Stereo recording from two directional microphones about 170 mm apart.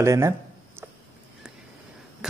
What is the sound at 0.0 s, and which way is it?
Speech, 15° right (ahead or behind).